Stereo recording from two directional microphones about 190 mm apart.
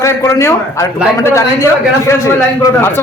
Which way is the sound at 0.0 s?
15° left (ahead or behind).